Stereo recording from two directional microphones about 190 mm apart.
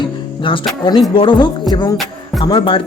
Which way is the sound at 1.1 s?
25° left (ahead or behind).